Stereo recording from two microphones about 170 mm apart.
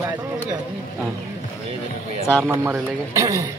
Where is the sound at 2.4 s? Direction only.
15° right (ahead or behind).